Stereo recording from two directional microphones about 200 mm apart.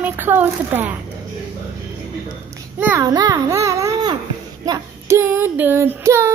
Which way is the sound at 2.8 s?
10° right (ahead or behind).